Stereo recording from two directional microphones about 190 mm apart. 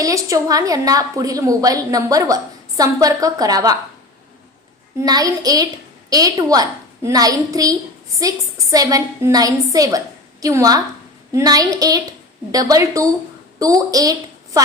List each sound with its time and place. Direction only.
0.0 s a woman's voice: 15° right (ahead or behind)
4.9 s a woman's voice: 20° right (ahead or behind)